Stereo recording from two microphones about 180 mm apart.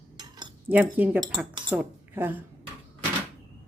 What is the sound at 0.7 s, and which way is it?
A woman's voice, 10° right (ahead or behind).